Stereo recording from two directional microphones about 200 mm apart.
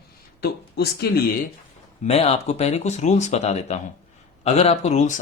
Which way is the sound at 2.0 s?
30° left (ahead or behind).